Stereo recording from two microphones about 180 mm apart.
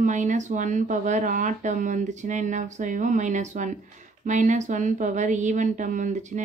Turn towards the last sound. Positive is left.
turn(degrees=-40)  # may be behind; listen again after turning